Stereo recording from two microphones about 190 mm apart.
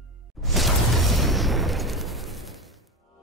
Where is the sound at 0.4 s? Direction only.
Centre (ahead or behind).